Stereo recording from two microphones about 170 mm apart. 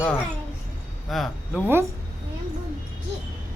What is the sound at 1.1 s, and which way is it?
Speech, centre (ahead or behind).